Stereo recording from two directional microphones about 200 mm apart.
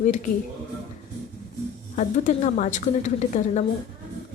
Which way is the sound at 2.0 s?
35° left (ahead or behind).